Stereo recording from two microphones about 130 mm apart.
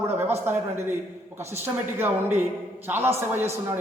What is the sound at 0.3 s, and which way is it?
A man's voice, 15° right (ahead or behind).